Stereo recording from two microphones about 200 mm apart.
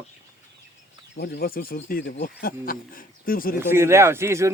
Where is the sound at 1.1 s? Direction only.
55° left (ahead or behind).